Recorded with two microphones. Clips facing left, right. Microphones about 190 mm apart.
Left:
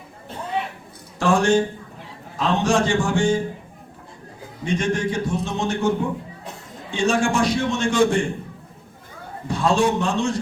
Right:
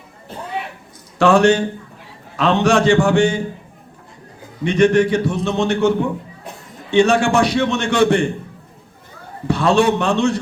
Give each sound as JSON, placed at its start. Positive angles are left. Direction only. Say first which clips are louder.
{"t": 1.2, "sound": "a man's voice", "louder": "right 5 dB", "side_deg": -70}
{"t": 4.6, "sound": "a man's voice", "louder": "right 9 dB", "side_deg": -65}
{"t": 6.9, "sound": "a man's voice", "louder": "right 6 dB", "side_deg": -65}
{"t": 9.5, "sound": "a man's voice", "louder": "right 4 dB", "side_deg": -65}